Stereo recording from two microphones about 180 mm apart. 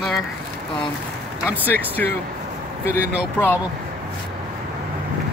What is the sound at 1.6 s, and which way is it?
Speech, 10° left (ahead or behind).